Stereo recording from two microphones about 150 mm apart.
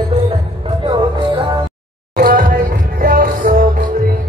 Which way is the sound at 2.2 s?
70° right (ahead or behind).